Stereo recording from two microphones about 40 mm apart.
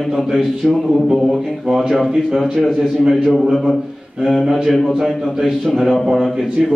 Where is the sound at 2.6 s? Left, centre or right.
Centre.